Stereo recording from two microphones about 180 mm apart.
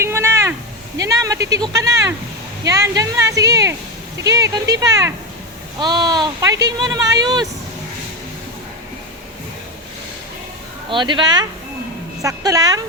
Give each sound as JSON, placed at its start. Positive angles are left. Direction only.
{"t": 0.0, "sound": "a sound", "side_deg": -15}
{"t": 0.9, "sound": "speech", "side_deg": -20}
{"t": 10.8, "sound": "speech", "side_deg": -25}